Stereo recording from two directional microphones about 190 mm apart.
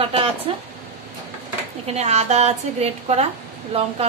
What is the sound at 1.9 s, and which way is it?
A woman's voice, 35° right (ahead or behind).